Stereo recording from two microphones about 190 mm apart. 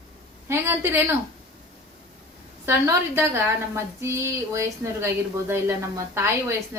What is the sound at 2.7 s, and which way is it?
A woman's voice, 15° right (ahead or behind).